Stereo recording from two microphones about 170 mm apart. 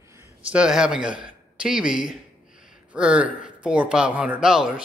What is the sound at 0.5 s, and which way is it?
Speech, 5° right (ahead or behind).